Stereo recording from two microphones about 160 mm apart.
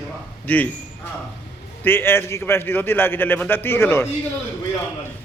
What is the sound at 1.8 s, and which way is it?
A man's voice, 15° left (ahead or behind).